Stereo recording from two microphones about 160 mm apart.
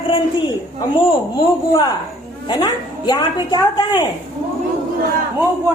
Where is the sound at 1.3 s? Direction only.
25° left (ahead or behind).